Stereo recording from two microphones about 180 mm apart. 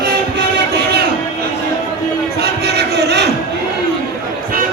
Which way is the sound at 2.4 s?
65° right (ahead or behind).